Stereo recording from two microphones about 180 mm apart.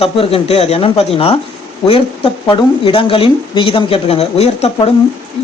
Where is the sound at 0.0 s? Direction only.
35° left (ahead or behind).